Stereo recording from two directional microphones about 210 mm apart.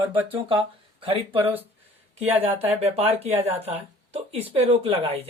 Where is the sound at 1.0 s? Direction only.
25° right (ahead or behind).